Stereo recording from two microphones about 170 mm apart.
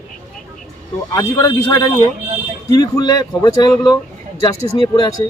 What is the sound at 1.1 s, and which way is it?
Speech, 15° left (ahead or behind).